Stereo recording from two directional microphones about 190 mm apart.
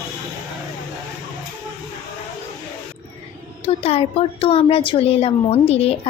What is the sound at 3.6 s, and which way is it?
A woman's voice, 30° left (ahead or behind).